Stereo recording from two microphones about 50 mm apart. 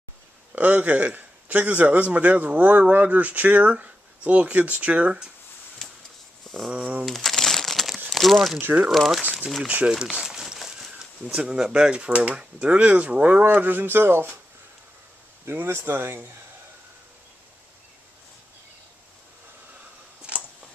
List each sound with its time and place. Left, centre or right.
0.6 s a man's voice: right
6.7 s speech: right
7.1 s crumpling: centre
8.1 s speech: centre
8.5 s a man's voice: right
8.9 s speech: centre
9.7 s speech: right
10.2 s speech: centre
13.4 s speech: right
15.5 s speech: right